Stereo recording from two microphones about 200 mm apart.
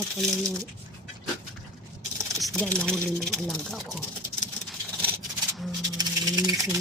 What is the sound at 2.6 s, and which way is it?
Speech, 5° left (ahead or behind).